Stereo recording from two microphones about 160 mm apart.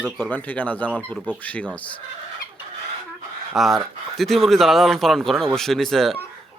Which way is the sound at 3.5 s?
Centre (ahead or behind).